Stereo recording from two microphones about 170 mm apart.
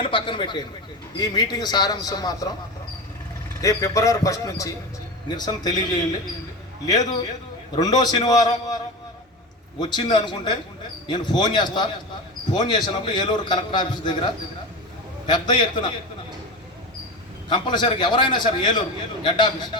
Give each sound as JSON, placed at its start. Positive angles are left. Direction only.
{"t": 0.0, "sound": "a man's voice", "side_deg": 30}
{"t": 3.6, "sound": "a man's voice", "side_deg": 20}
{"t": 6.8, "sound": "a man's voice", "side_deg": 20}
{"t": 9.8, "sound": "a man's voice", "side_deg": 25}
{"t": 17.5, "sound": "a man's voice", "side_deg": 25}